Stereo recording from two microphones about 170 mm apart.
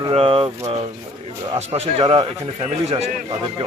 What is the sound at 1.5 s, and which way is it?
Speech, 40° right (ahead or behind).